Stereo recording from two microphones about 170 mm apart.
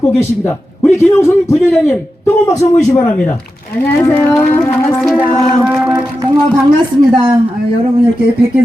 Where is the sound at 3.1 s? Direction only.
5° left (ahead or behind).